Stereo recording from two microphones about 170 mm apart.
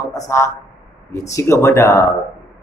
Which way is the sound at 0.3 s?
15° left (ahead or behind).